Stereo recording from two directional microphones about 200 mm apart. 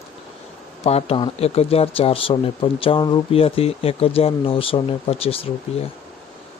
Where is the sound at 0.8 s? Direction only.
30° left (ahead or behind).